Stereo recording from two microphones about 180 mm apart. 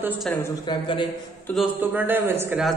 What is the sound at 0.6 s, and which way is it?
Speech, 30° left (ahead or behind).